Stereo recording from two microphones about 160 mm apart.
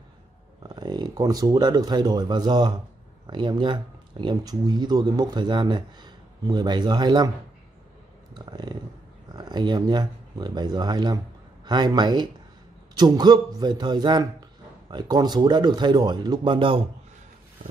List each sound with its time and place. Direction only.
0.7 s speech: 25° right (ahead or behind)
8.4 s a sound: 25° right (ahead or behind)
9.3 s speech: 25° right (ahead or behind)